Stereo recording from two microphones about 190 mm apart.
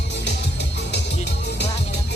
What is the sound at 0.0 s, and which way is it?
Music, 65° left (ahead or behind).